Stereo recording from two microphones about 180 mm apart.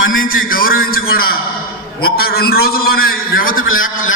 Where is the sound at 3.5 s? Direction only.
90° left.